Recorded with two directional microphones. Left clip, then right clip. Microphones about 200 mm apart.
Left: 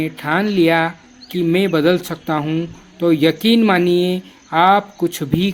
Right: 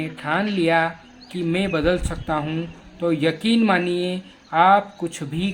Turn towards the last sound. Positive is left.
turn(degrees=30)  # may be behind; listen again after turning